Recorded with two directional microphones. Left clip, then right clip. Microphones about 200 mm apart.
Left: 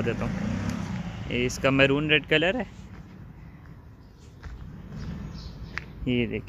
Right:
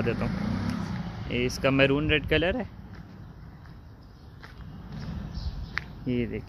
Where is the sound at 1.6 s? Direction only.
Centre (ahead or behind).